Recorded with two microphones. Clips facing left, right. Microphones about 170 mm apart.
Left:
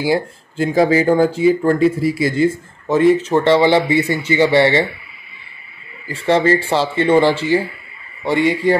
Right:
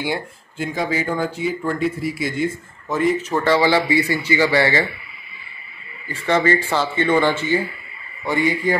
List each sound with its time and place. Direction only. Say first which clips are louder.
0.0 s speech: left 7 dB; 35° left (ahead or behind)
6.0 s speech: left 4 dB; 30° left (ahead or behind)